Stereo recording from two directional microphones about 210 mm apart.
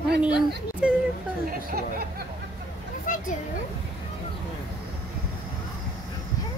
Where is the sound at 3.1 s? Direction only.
40° left (ahead or behind).